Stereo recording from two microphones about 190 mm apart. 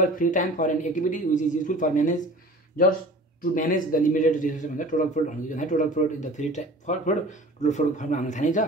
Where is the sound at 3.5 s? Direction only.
45° left (ahead or behind).